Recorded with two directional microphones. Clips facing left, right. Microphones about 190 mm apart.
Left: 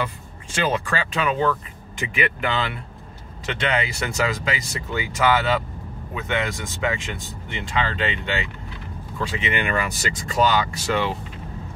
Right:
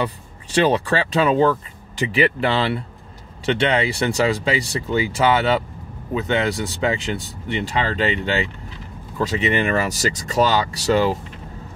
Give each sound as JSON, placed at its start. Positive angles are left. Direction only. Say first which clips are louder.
{"t": 0.7, "sound": "speech", "louder": "right 5 dB", "side_deg": -35}